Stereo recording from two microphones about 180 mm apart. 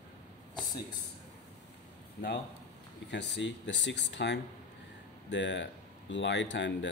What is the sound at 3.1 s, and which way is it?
Speech, 75° left (ahead or behind).